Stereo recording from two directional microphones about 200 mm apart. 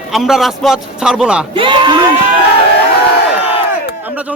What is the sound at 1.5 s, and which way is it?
Speech, 25° right (ahead or behind).